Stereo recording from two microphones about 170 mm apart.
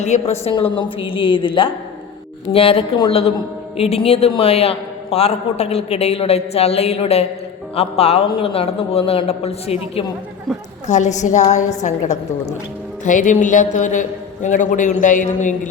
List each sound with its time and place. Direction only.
0.0 s a man's voice: 40° left (ahead or behind)